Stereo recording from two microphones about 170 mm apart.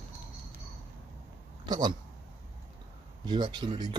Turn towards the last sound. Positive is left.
turn(degrees=-25)  # may be behind; listen again after turning